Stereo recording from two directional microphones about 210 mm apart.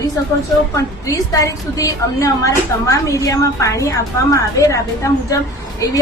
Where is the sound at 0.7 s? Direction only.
15° left (ahead or behind).